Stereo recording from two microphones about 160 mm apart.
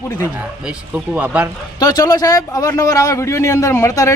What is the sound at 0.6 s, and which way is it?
Speech, 10° right (ahead or behind).